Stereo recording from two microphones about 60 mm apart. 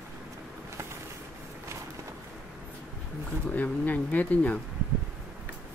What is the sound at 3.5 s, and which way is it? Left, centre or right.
Speech, left.